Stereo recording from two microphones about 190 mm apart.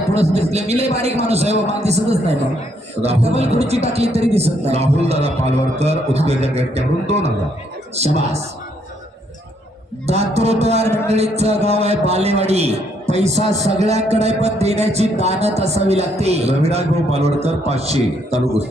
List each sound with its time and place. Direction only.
0.1 s a man's voice: 35° right (ahead or behind)
3.0 s a man's voice: 35° right (ahead or behind)
10.1 s a man's voice: 35° right (ahead or behind)